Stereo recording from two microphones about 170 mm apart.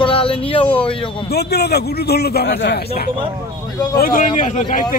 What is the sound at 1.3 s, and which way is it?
A man's voice, 70° left (ahead or behind).